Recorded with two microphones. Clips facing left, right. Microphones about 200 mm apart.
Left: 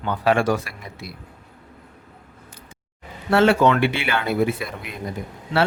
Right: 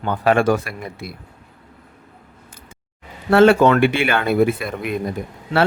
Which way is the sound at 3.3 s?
50° right (ahead or behind).